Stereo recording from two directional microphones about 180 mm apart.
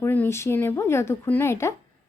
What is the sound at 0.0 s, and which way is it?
Speech, 10° left (ahead or behind).